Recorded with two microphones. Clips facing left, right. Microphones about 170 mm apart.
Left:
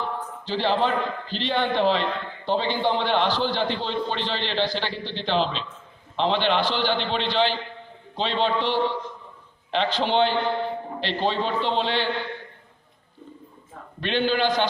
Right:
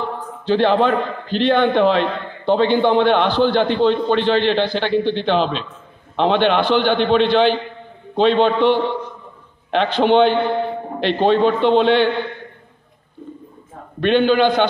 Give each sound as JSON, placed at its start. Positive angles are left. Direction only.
{"t": 0.5, "sound": "a man's voice", "side_deg": -60}
{"t": 14.0, "sound": "a man's voice", "side_deg": -60}